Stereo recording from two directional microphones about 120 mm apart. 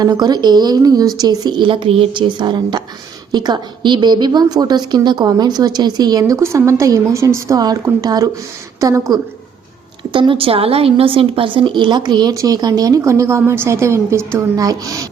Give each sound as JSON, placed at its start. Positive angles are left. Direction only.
{"t": 0.0, "sound": "a woman's voice", "side_deg": -35}
{"t": 10.0, "sound": "a woman's voice", "side_deg": -40}